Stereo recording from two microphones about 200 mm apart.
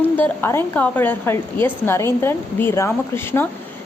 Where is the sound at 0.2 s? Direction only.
10° left (ahead or behind).